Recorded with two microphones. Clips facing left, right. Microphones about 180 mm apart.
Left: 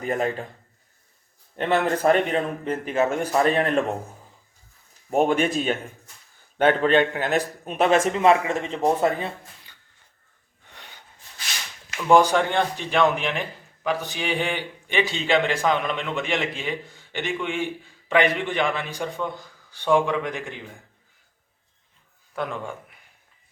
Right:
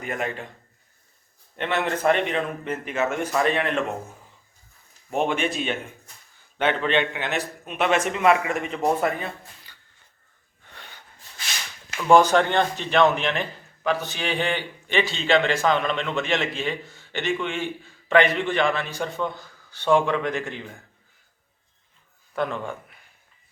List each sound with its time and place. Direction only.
0.0 s a man's voice: 35° left (ahead or behind)
1.5 s a man's voice: 40° left (ahead or behind)
5.1 s a man's voice: 40° left (ahead or behind)
12.1 s a man's voice: 10° left (ahead or behind)
22.4 s a man's voice: 10° left (ahead or behind)